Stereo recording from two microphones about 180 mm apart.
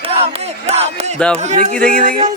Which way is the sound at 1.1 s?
5° left (ahead or behind).